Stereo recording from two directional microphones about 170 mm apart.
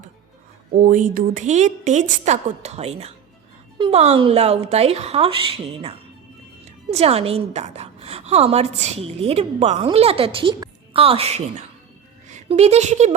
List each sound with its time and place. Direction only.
0.9 s a woman's voice: 50° right (ahead or behind)